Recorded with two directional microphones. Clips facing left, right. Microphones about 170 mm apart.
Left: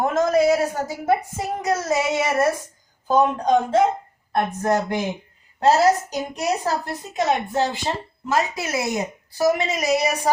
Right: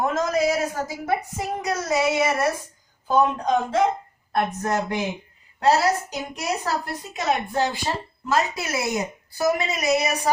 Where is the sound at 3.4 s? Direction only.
30° left (ahead or behind).